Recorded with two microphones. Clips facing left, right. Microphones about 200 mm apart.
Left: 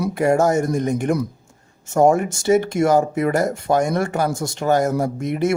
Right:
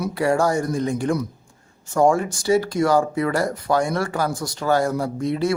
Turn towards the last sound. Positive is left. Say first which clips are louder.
# left 1 dB
turn(degrees=20)  # may be behind; listen again after turning